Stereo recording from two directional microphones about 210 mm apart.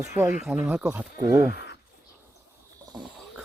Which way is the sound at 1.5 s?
55° left (ahead or behind).